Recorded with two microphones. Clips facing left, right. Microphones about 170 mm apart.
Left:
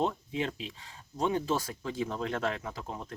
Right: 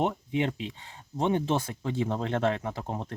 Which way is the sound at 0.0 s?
20° right (ahead or behind).